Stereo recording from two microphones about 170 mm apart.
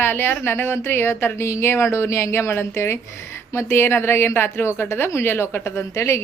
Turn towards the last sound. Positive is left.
turn(degrees=15)  # may be behind; listen again after turning